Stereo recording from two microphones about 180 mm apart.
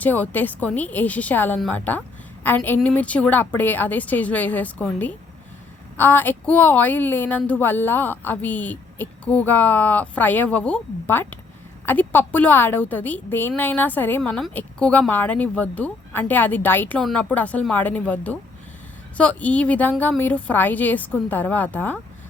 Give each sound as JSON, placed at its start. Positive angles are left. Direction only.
{"t": 0.0, "sound": "a woman's voice", "side_deg": 10}